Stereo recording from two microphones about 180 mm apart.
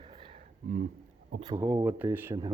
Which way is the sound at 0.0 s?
25° right (ahead or behind).